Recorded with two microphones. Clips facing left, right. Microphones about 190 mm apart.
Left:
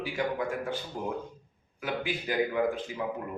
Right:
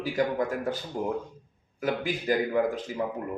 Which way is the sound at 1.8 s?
40° right (ahead or behind).